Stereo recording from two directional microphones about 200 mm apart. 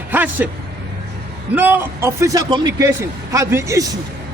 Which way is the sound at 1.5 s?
10° right (ahead or behind).